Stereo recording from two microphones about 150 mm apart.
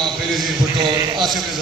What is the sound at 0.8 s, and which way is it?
Speech, 30° right (ahead or behind).